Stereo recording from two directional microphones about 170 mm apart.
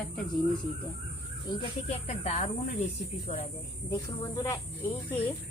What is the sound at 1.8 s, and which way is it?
Speech, 40° left (ahead or behind).